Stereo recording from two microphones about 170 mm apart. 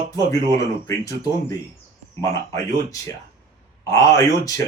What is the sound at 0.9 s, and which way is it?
Speech, 20° left (ahead or behind).